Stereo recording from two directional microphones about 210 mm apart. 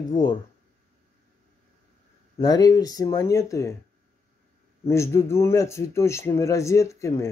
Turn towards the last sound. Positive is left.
turn(degrees=15)  # may be behind; listen again after turning